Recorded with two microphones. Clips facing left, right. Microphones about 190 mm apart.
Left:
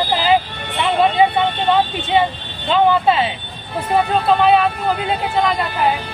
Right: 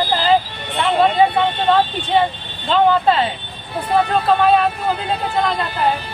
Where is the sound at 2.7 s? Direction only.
10° left (ahead or behind).